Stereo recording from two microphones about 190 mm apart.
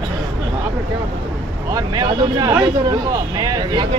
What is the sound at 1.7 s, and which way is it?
Speech, 20° right (ahead or behind).